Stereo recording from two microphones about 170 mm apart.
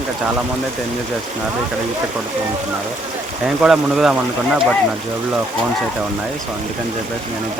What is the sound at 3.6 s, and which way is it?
Speech, 5° right (ahead or behind).